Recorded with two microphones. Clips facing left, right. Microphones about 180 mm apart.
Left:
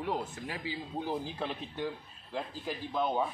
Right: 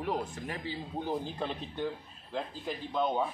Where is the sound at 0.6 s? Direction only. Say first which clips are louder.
Even; 10° left (ahead or behind).